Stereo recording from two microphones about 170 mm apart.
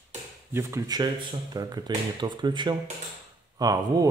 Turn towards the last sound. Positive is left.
turn(degrees=-20)  # may be behind; listen again after turning